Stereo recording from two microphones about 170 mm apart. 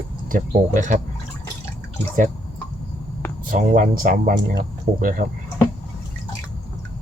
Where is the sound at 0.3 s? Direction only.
50° right (ahead or behind).